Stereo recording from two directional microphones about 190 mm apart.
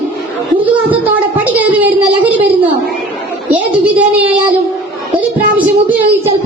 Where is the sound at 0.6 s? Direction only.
10° right (ahead or behind).